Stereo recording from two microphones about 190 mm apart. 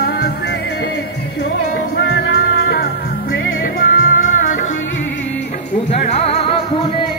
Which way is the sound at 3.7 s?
50° left (ahead or behind).